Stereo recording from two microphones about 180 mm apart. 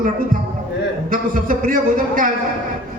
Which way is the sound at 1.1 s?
50° right (ahead or behind).